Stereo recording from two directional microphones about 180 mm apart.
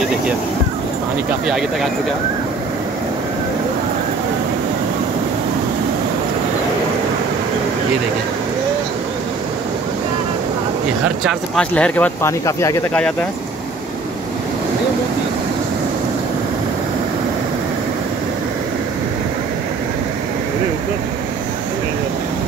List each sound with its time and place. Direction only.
11.2 s speech: 5° left (ahead or behind)